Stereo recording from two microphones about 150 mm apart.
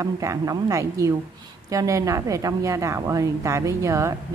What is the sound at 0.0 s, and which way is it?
A woman's voice, 20° right (ahead or behind).